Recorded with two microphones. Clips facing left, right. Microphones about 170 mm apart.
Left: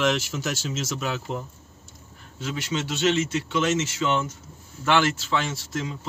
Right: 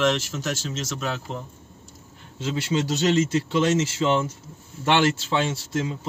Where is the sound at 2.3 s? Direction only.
30° right (ahead or behind).